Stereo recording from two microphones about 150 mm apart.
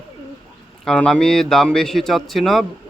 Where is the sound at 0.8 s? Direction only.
5° left (ahead or behind).